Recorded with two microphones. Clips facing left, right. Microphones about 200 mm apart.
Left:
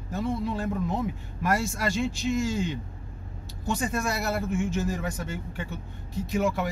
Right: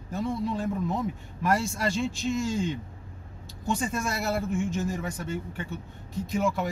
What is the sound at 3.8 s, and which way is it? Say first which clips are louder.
Speech: left 1 dB; 60° left (ahead or behind).